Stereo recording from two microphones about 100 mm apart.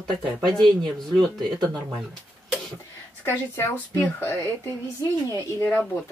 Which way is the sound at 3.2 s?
25° left (ahead or behind).